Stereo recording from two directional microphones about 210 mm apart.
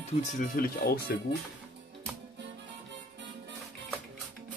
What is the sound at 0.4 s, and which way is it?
Speech, 45° left (ahead or behind).